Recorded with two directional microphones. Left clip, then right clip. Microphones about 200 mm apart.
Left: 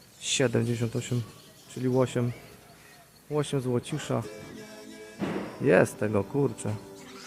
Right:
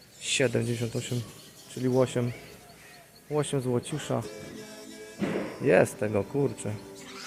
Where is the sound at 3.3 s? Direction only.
30° left (ahead or behind).